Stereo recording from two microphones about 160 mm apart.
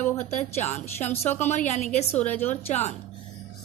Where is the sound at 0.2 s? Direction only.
45° left (ahead or behind).